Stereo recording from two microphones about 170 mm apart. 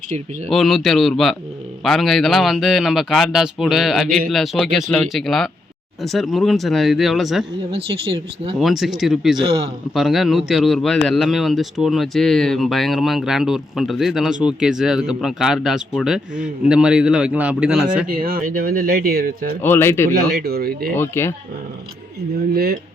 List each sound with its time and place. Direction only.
0.5 s speech: centre (ahead or behind)
7.7 s speech: 35° right (ahead or behind)
8.5 s speech: centre (ahead or behind)
9.4 s a man's voice: 20° right (ahead or behind)
9.9 s speech: centre (ahead or behind)
18.1 s speech: 60° right (ahead or behind)
19.6 s speech: 15° left (ahead or behind)
20.1 s speech: 65° right (ahead or behind)
20.9 s speech: 15° left (ahead or behind)
22.5 s speech: 65° right (ahead or behind)